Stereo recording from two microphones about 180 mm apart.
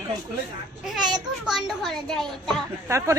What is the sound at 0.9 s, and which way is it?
A child's voice, 5° right (ahead or behind).